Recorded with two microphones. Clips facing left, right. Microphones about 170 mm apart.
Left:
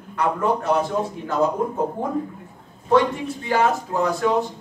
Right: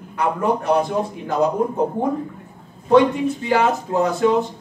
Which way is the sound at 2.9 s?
20° right (ahead or behind).